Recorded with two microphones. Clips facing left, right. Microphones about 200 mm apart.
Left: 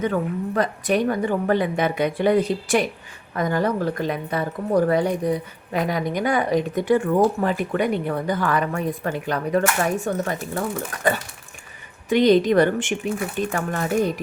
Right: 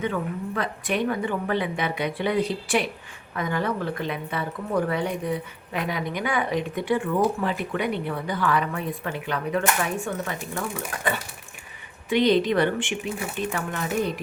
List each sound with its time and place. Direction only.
0.0 s a woman's voice: 40° left (ahead or behind)
12.0 s a woman's voice: 45° left (ahead or behind)